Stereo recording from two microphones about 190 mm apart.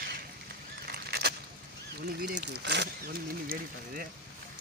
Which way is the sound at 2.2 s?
55° right (ahead or behind).